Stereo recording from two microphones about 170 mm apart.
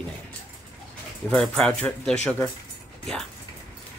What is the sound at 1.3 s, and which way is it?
Speech, 5° left (ahead or behind).